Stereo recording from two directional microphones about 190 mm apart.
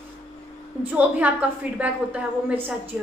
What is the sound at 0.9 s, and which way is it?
A woman's voice, 10° right (ahead or behind).